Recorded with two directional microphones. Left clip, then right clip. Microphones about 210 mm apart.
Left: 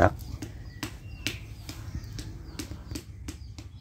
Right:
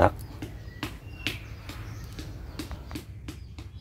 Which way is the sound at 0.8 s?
45° left (ahead or behind).